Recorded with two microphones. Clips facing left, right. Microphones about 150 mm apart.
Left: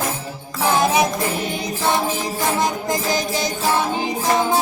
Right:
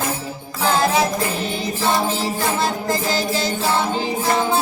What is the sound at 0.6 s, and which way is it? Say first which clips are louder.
Music: left 1 dB; 20° left (ahead or behind).